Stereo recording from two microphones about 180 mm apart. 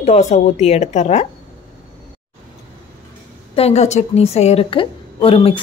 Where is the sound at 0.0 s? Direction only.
40° left (ahead or behind).